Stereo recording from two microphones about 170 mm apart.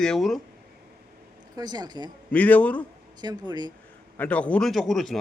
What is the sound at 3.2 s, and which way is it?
Speech, 25° right (ahead or behind).